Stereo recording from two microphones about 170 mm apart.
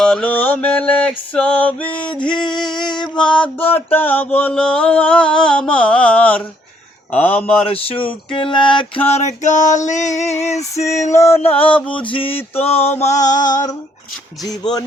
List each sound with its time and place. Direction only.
0.0 s mantra: 5° left (ahead or behind)
1.9 s speech: 30° left (ahead or behind)
3.9 s mantra: 10° left (ahead or behind)
8.0 s a sound: 30° left (ahead or behind)
10.8 s mantra: 15° left (ahead or behind)
11.2 s a sound: 40° left (ahead or behind)
11.5 s mantra: 10° left (ahead or behind)
12.0 s a sound: 30° left (ahead or behind); by 13.6 s 50° left (ahead or behind)
14.4 s speech: 20° left (ahead or behind)